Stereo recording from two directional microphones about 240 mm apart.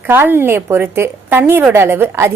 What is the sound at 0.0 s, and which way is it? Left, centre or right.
A woman's voice, centre.